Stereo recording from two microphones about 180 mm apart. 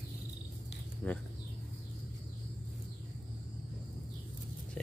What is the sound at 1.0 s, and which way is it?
Speech, 5° left (ahead or behind).